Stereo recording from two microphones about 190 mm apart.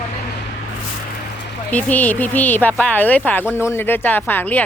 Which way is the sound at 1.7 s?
10° left (ahead or behind).